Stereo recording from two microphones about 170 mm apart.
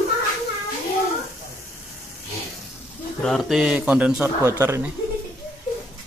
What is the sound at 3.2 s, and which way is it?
Speech, centre (ahead or behind).